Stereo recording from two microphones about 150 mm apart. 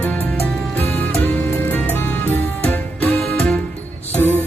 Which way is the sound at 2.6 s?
10° left (ahead or behind).